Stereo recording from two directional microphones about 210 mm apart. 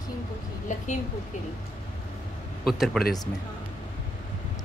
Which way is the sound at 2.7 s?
Centre (ahead or behind).